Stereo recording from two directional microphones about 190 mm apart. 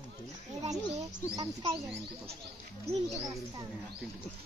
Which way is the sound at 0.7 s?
20° right (ahead or behind).